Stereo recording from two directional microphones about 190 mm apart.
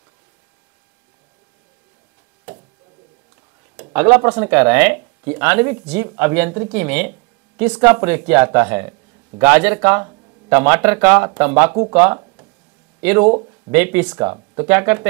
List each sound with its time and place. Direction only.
3.9 s speech: 10° right (ahead or behind)
14.3 s speech: 20° right (ahead or behind)
14.7 s speech: 10° right (ahead or behind)